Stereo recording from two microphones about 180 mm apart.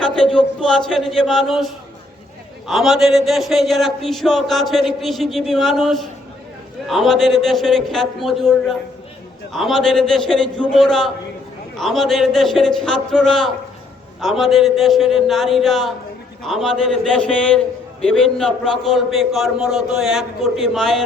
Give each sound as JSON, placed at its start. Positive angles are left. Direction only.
{"t": 0.0, "sound": "a man's voice", "side_deg": 5}